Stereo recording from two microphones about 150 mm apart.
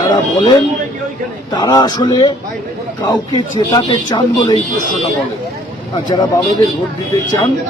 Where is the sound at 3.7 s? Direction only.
30° left (ahead or behind).